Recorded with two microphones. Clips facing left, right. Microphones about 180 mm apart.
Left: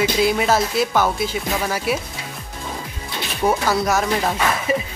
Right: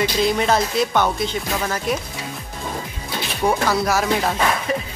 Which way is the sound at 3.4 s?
Centre (ahead or behind).